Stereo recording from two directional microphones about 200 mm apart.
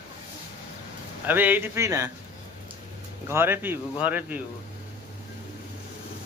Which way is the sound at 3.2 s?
10° right (ahead or behind).